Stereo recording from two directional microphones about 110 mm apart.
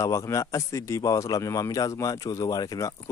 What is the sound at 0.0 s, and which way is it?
Speech, 30° left (ahead or behind).